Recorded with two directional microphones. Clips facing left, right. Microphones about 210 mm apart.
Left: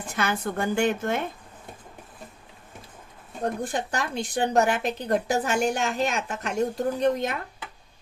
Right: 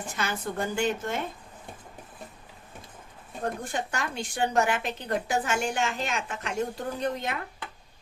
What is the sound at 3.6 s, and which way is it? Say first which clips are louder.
A woman's voice: left 3 dB; 35° left (ahead or behind).